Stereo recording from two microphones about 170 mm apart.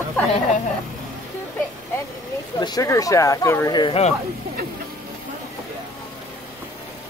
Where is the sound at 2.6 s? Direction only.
20° left (ahead or behind).